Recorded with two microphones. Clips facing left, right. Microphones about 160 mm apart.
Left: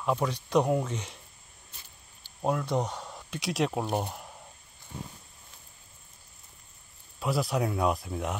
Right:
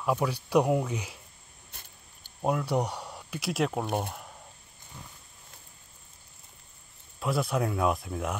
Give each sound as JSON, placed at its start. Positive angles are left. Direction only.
{"t": 0.0, "sound": "speech", "side_deg": -5}
{"t": 1.7, "sound": "a sound", "side_deg": -55}
{"t": 2.4, "sound": "speech", "side_deg": -5}
{"t": 3.8, "sound": "speech", "side_deg": 10}
{"t": 7.2, "sound": "speech", "side_deg": 0}